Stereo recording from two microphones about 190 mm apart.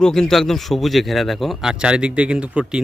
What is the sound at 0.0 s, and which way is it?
A man's voice, 5° left (ahead or behind).